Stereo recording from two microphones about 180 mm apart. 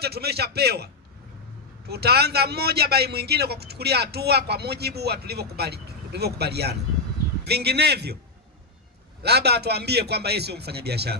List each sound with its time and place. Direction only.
0.0 s a man's voice: 60° right (ahead or behind)
1.9 s a man's voice: 60° right (ahead or behind)
9.2 s a man's voice: 65° right (ahead or behind)